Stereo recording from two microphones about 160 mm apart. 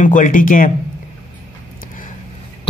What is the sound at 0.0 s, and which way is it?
Speech, 55° left (ahead or behind).